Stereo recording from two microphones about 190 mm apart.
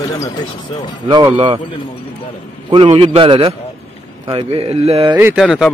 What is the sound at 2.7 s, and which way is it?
Speech, 30° right (ahead or behind).